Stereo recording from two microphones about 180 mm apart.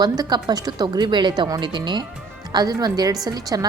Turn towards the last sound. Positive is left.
turn(degrees=-20)  # may be behind; listen again after turning